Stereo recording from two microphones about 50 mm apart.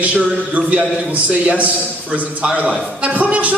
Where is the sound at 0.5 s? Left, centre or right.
Right.